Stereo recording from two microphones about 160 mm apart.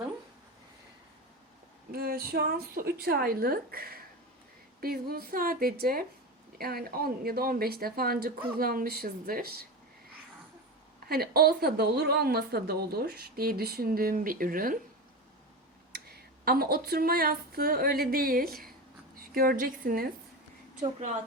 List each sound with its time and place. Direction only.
1.9 s speech: 70° right (ahead or behind)
11.1 s speech: 70° right (ahead or behind)
16.4 s a woman's voice: 70° right (ahead or behind)